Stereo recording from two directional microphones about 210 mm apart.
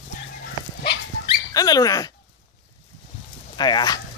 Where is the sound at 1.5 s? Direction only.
20° left (ahead or behind).